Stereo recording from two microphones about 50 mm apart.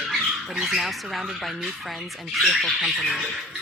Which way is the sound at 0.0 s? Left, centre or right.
Centre.